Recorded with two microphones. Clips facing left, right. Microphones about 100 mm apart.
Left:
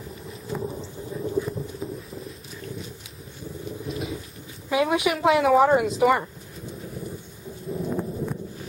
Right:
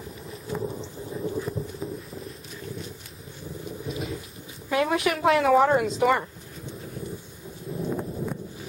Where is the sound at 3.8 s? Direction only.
Centre (ahead or behind).